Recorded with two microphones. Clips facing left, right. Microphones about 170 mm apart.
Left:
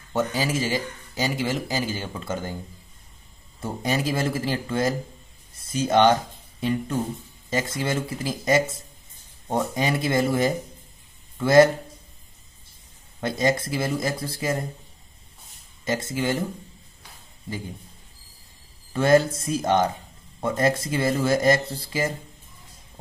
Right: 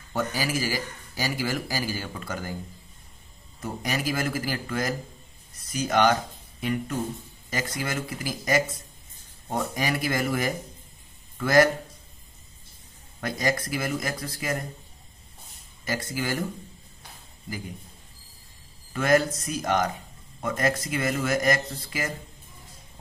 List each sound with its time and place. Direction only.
0.1 s speech: 25° left (ahead or behind)
3.6 s speech: 25° left (ahead or behind)
13.2 s speech: 25° left (ahead or behind)
15.8 s speech: 25° left (ahead or behind)
18.9 s speech: 30° left (ahead or behind)